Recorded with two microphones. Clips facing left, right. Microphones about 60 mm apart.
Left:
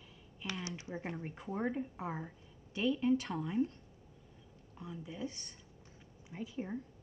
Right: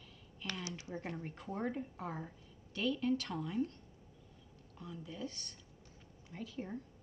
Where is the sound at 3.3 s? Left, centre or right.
Centre.